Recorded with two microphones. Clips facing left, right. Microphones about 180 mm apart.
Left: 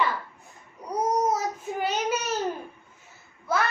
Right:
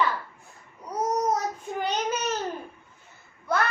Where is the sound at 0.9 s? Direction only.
5° left (ahead or behind).